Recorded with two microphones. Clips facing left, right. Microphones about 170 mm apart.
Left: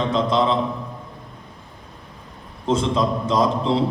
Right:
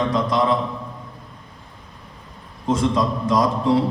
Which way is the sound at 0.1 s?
25° left (ahead or behind).